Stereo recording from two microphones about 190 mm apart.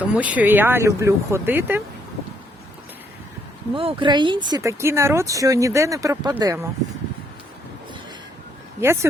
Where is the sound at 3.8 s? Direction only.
25° right (ahead or behind).